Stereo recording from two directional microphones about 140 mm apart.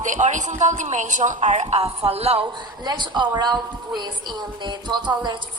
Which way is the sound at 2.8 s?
30° right (ahead or behind).